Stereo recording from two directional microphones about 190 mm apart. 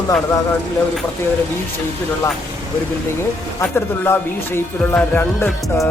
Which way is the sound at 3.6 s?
10° left (ahead or behind).